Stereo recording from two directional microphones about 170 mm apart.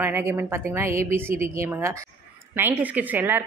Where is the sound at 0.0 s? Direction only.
15° right (ahead or behind).